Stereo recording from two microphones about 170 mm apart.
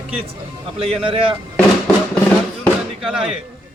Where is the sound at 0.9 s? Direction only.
35° right (ahead or behind).